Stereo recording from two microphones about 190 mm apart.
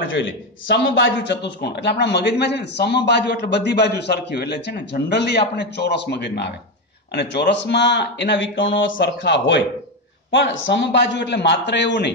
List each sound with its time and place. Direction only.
0.1 s a man's voice: 75° left (ahead or behind)